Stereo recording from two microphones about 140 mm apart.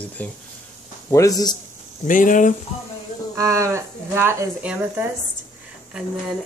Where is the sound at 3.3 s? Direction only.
20° right (ahead or behind).